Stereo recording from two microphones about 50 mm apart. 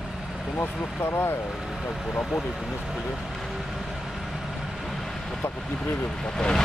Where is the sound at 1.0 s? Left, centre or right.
Left.